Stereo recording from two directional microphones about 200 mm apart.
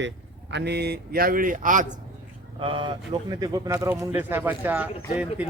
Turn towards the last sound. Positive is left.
turn(degrees=-5)  # may be behind; listen again after turning